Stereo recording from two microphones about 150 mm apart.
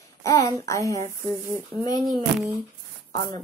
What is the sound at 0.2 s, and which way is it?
Speech, 25° left (ahead or behind).